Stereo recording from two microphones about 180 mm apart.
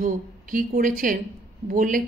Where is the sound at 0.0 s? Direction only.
50° right (ahead or behind).